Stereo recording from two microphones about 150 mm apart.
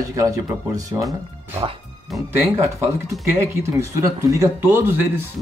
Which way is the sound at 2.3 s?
20° right (ahead or behind).